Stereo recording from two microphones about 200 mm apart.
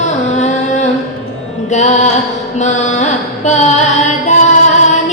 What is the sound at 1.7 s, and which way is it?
Music, 35° left (ahead or behind).